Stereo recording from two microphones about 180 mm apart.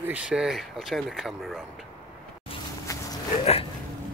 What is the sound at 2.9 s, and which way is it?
Dog, 20° left (ahead or behind).